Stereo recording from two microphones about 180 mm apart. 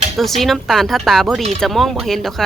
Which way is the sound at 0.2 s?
Centre (ahead or behind).